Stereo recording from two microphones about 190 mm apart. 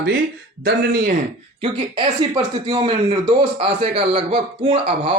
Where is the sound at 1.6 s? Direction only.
25° right (ahead or behind).